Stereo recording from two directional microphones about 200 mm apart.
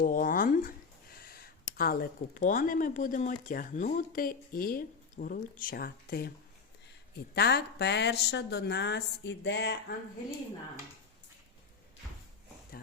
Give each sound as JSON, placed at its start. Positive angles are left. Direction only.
{"t": 0.0, "sound": "a sound", "side_deg": 45}
{"t": 1.2, "sound": "a woman's voice", "side_deg": 50}
{"t": 7.3, "sound": "speech", "side_deg": 55}